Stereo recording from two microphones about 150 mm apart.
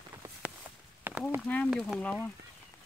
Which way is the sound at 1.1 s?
15° right (ahead or behind).